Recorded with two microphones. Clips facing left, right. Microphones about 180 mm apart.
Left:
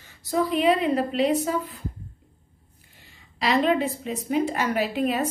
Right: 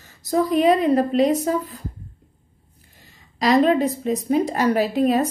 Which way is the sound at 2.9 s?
40° right (ahead or behind).